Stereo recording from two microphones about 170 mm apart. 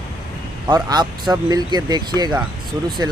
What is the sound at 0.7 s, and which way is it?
Speech, 25° right (ahead or behind).